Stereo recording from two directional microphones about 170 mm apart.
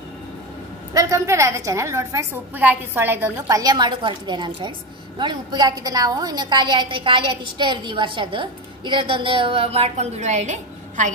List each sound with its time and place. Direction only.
0.9 s a woman's voice: 20° right (ahead or behind); by 11.1 s 45° right (ahead or behind)